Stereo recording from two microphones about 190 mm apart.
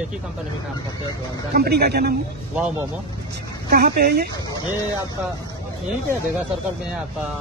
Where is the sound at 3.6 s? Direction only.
55° right (ahead or behind).